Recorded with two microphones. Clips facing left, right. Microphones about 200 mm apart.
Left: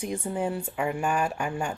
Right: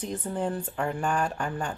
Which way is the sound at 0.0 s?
10° left (ahead or behind).